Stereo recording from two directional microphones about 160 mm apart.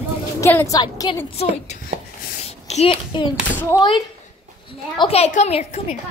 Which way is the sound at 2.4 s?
40° left (ahead or behind).